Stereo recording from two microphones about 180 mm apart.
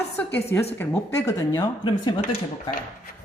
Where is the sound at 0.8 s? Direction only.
15° left (ahead or behind).